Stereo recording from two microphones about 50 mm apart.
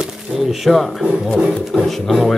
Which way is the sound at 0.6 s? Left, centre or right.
Centre.